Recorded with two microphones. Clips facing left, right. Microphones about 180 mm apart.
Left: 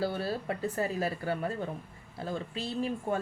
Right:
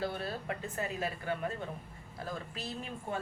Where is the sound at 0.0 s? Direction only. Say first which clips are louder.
Left 5 dB; 30° left (ahead or behind).